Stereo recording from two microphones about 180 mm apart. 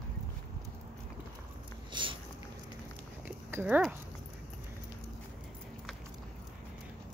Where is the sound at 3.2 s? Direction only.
10° right (ahead or behind).